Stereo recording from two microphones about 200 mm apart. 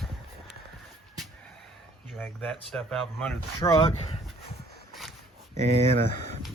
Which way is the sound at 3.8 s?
30° left (ahead or behind).